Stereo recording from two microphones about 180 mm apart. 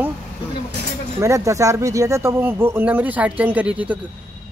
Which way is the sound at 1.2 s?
15° right (ahead or behind).